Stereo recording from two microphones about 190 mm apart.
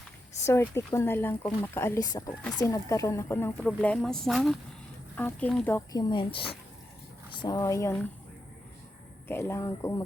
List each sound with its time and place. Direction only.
0.4 s speech: 15° left (ahead or behind)
5.9 s a woman's voice: 20° left (ahead or behind)
7.4 s speech: 20° left (ahead or behind)
9.2 s speech: 10° left (ahead or behind)